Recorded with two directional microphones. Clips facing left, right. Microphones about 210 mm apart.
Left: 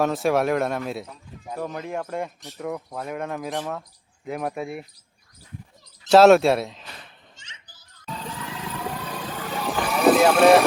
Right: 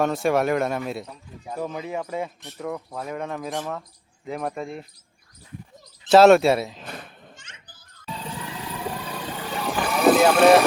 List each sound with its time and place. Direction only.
0.0 s speech: centre (ahead or behind)
6.1 s speech: centre (ahead or behind)
6.8 s children playing: 55° right (ahead or behind)
9.1 s vehicle: centre (ahead or behind)